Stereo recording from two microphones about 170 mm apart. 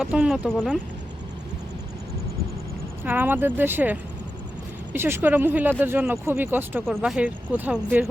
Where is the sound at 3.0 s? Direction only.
10° right (ahead or behind).